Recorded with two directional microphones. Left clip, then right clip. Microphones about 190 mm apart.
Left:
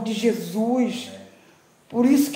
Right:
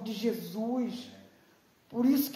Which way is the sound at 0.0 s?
15° right (ahead or behind).